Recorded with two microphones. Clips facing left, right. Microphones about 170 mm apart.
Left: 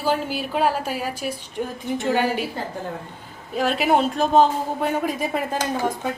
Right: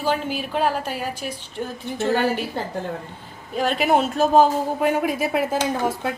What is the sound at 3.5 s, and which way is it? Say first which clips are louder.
Speech: even; centre (ahead or behind).